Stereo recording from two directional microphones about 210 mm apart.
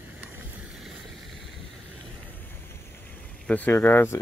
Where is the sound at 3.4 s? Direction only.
10° left (ahead or behind).